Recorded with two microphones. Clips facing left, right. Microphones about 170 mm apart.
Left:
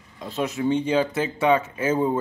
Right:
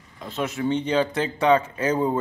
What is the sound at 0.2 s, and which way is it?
Speech, 15° left (ahead or behind).